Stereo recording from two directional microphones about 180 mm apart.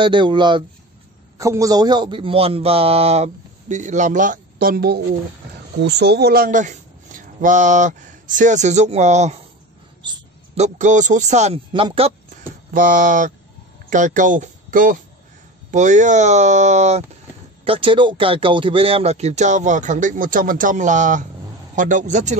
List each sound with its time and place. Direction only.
0.0 s a man's voice: 25° right (ahead or behind); by 5.0 s 60° right (ahead or behind)
5.8 s speech: 70° right (ahead or behind); by 9.4 s 40° right (ahead or behind)
10.0 s a sound: 25° right (ahead or behind)
10.6 s a man's voice: 45° right (ahead or behind)
12.7 s a man's voice: 50° right (ahead or behind)
17.6 s a man's voice: 30° right (ahead or behind)